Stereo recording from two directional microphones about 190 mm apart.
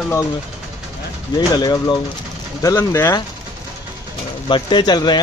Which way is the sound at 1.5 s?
20° left (ahead or behind).